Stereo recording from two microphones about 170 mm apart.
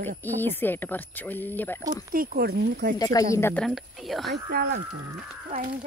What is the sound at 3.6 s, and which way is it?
Speech, centre (ahead or behind).